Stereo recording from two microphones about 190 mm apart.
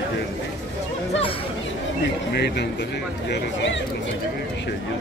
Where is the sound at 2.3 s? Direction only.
60° left (ahead or behind).